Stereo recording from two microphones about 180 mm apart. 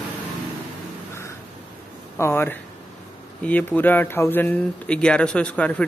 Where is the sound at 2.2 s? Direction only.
15° left (ahead or behind).